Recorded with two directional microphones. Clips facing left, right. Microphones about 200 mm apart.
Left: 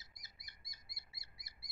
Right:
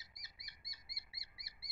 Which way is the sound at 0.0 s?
50° left (ahead or behind).